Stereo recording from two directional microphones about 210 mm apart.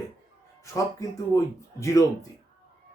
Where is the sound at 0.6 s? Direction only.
15° left (ahead or behind).